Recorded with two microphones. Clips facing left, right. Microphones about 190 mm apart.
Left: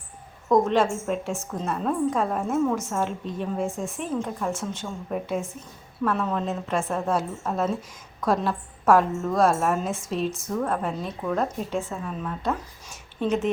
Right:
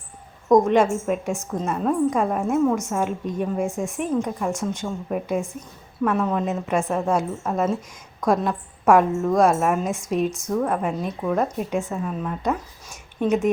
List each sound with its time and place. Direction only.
0.4 s a woman's voice: 15° right (ahead or behind)
6.9 s a woman's voice: centre (ahead or behind)